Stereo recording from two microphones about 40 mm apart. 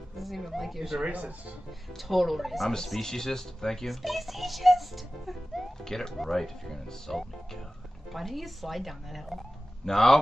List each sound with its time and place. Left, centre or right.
0.2 s a child's voice: centre
1.0 s speech: right
2.0 s a child's voice: centre
3.0 s a child's voice: centre
5.9 s a child's voice: centre